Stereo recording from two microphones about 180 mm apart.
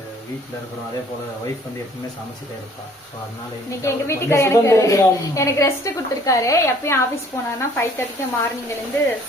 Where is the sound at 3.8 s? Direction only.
15° left (ahead or behind).